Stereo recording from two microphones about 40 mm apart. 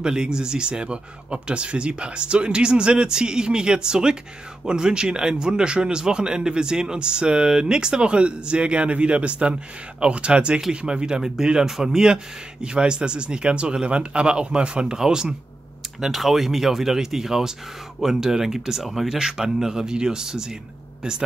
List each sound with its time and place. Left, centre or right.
0.0 s a man's voice: centre
16.0 s speech: centre